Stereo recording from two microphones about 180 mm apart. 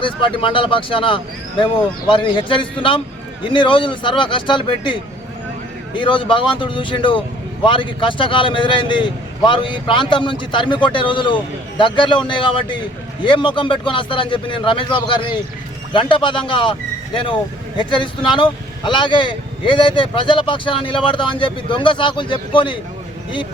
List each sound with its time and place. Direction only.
0.0 s speech: 30° left (ahead or behind)
17.7 s speech: 25° left (ahead or behind)